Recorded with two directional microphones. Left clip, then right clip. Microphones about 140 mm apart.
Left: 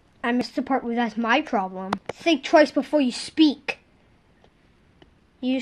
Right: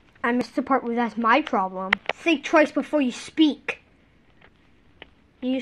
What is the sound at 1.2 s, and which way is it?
Speech, 80° left.